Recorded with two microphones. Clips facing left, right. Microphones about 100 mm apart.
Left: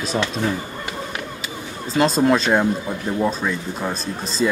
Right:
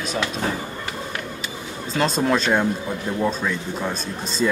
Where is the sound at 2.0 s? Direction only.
Centre (ahead or behind).